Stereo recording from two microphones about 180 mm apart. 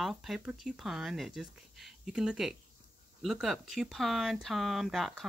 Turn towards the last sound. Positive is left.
turn(degrees=0)  # may be behind; listen again after turning